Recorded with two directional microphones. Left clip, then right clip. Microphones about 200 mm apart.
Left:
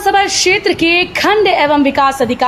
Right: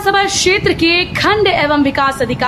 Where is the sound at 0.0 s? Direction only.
5° left (ahead or behind).